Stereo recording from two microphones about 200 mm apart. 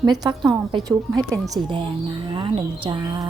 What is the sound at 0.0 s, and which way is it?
Speech, 20° right (ahead or behind).